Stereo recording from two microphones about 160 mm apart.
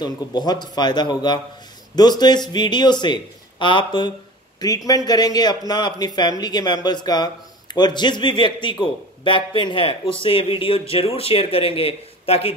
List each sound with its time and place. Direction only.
0.0 s speech: 25° left (ahead or behind)